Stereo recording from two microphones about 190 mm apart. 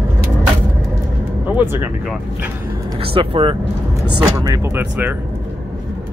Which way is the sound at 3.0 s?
30° right (ahead or behind).